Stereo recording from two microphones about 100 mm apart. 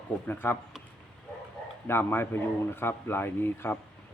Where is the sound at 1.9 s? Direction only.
20° left (ahead or behind).